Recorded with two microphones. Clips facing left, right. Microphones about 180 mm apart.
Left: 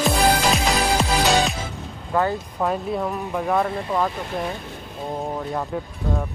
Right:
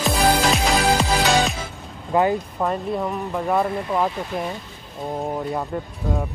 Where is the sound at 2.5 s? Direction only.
Centre (ahead or behind).